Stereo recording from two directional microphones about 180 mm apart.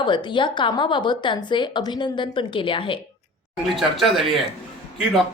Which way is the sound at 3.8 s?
Centre (ahead or behind).